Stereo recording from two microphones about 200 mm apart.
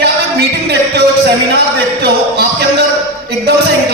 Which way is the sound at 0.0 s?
55° right (ahead or behind).